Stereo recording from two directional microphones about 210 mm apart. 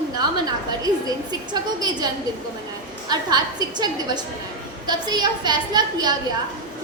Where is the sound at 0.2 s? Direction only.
20° right (ahead or behind).